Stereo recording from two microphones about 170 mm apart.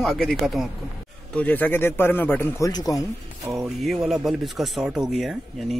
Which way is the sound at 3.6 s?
Centre (ahead or behind).